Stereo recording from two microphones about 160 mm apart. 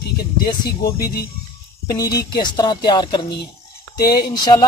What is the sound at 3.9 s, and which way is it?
Speech, 75° left (ahead or behind).